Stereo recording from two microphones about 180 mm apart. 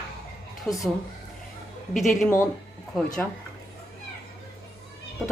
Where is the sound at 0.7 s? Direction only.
Centre (ahead or behind).